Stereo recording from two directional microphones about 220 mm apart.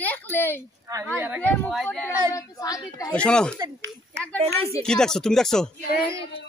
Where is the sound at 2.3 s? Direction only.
15° left (ahead or behind).